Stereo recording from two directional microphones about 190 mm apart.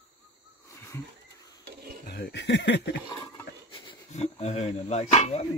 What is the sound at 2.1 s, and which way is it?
Speech, 60° left (ahead or behind).